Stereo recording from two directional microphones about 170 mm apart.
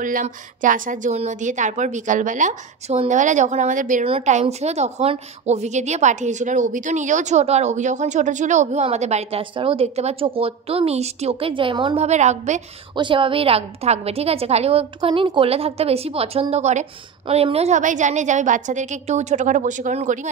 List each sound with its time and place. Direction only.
0.0 s a woman's voice: 50° right (ahead or behind)
12.9 s a woman's voice: 30° right (ahead or behind); by 20.2 s 45° right (ahead or behind)